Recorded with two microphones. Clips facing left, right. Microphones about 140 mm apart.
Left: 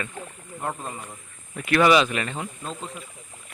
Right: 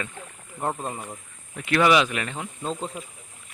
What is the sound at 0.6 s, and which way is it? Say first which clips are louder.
Speech: right 3 dB; 25° right (ahead or behind).